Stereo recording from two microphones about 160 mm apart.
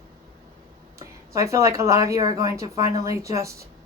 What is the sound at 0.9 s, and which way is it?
Speech, 20° right (ahead or behind).